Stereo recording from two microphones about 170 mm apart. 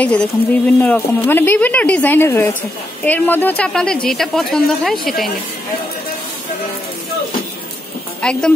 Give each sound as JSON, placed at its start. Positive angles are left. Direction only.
{"t": 0.0, "sound": "speech", "side_deg": 5}
{"t": 8.2, "sound": "speech", "side_deg": 5}